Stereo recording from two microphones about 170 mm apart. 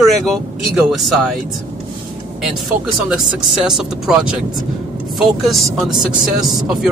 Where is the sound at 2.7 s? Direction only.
50° right (ahead or behind).